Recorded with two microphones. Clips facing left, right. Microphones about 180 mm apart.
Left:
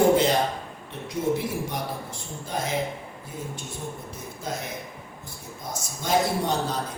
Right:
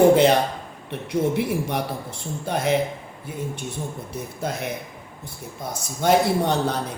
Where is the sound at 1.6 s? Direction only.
65° right (ahead or behind).